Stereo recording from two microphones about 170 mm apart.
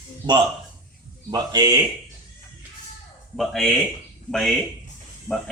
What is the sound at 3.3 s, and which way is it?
Speech, centre (ahead or behind).